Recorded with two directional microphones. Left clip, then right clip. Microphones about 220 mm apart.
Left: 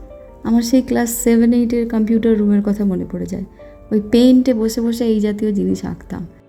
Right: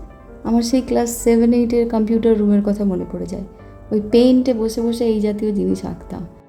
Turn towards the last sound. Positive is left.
turn(degrees=25)  # may be behind; listen again after turning